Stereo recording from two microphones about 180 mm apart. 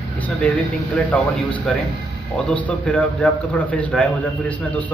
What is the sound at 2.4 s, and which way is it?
A man's voice, 5° left (ahead or behind).